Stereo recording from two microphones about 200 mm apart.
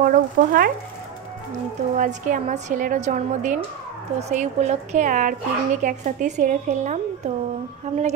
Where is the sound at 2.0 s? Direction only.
40° right (ahead or behind).